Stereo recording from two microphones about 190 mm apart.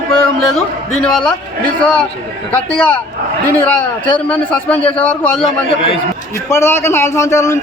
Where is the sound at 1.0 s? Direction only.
5° left (ahead or behind).